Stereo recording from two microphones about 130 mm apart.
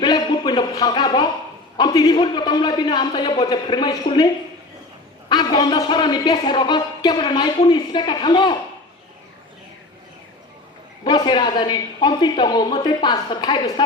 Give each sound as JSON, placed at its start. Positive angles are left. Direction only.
{"t": 0.0, "sound": "a sound", "side_deg": 30}
{"t": 1.8, "sound": "a woman's voice", "side_deg": 30}
{"t": 5.3, "sound": "a woman's voice", "side_deg": 30}
{"t": 11.0, "sound": "a woman's voice", "side_deg": 35}